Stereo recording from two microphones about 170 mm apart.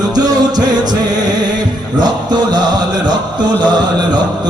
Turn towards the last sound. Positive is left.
turn(degrees=-25)  # may be behind; listen again after turning